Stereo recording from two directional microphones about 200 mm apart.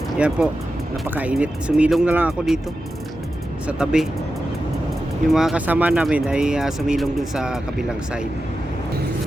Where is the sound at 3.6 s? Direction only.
5° right (ahead or behind).